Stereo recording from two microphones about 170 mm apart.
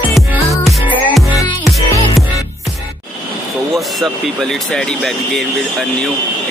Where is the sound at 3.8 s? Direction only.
Centre (ahead or behind).